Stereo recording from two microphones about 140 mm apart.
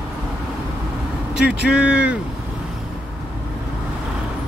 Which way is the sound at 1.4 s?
10° right (ahead or behind).